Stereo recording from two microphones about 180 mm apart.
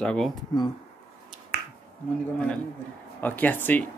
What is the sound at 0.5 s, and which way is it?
Speech, 20° left (ahead or behind).